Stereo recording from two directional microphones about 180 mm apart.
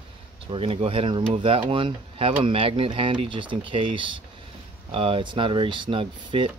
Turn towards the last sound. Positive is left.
turn(degrees=-30)  # may be behind; listen again after turning